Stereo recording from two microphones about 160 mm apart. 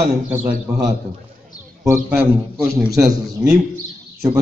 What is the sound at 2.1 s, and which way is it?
A man's voice, 10° right (ahead or behind).